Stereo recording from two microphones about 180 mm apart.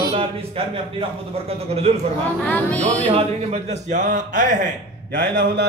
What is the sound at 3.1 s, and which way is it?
A man's voice, 35° right (ahead or behind).